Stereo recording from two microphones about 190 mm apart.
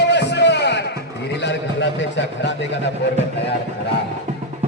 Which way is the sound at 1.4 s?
65° left (ahead or behind).